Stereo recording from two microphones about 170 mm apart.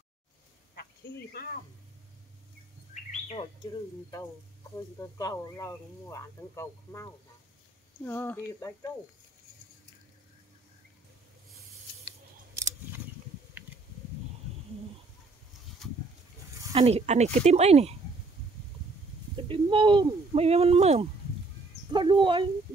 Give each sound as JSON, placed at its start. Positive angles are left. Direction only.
{"t": 1.3, "sound": "speech", "side_deg": 60}
{"t": 2.9, "sound": "bird", "side_deg": 40}
{"t": 4.9, "sound": "speech", "side_deg": 15}
{"t": 13.6, "sound": "a sound", "side_deg": -10}
{"t": 16.7, "sound": "speech", "side_deg": -35}
{"t": 19.3, "sound": "speech", "side_deg": -30}